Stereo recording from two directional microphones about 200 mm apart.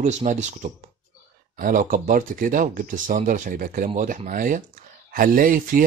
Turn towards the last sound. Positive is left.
turn(degrees=-45)  # may be behind; listen again after turning